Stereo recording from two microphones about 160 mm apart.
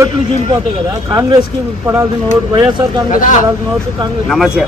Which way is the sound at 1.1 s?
20° right (ahead or behind).